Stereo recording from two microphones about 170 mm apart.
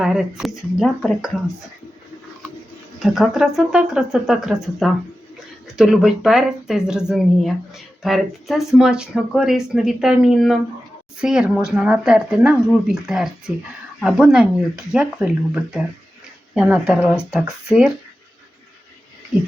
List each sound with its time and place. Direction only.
0.0 s speech: 5° right (ahead or behind)
3.0 s speech: centre (ahead or behind)